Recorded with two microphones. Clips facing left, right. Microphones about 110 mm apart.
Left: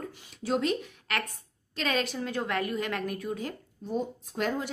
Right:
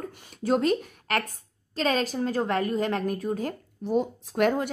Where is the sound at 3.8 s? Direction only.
80° right; by 4.6 s 65° right (ahead or behind).